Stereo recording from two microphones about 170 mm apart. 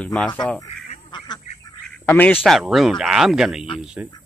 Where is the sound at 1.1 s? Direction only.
25° left (ahead or behind).